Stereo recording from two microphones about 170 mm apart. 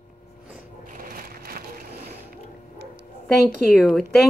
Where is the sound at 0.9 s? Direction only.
55° right (ahead or behind).